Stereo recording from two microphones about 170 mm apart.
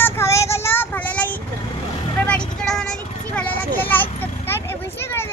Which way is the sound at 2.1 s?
5° left (ahead or behind).